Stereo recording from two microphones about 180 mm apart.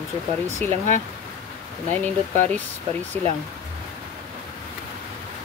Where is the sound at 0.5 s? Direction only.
40° right (ahead or behind).